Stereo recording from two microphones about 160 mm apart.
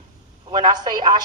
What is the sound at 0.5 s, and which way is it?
Speech, 25° right (ahead or behind).